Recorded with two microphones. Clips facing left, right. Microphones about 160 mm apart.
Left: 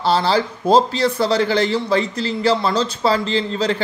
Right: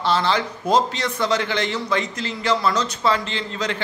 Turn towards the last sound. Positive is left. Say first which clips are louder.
# left 7 dB
turn(degrees=35)  # may be behind; listen again after turning